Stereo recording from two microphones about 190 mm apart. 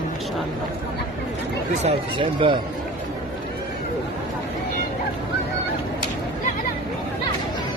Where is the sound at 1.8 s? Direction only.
25° right (ahead or behind).